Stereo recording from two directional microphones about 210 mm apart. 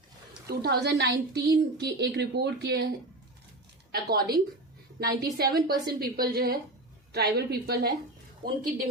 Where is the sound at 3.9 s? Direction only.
45° right (ahead or behind).